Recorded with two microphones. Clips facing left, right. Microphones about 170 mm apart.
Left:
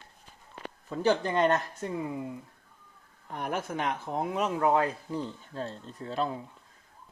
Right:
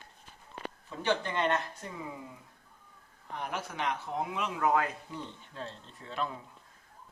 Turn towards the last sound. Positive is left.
turn(degrees=35)  # may be behind; listen again after turning